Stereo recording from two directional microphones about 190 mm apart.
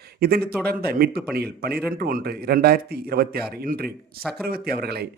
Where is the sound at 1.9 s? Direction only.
55° right (ahead or behind).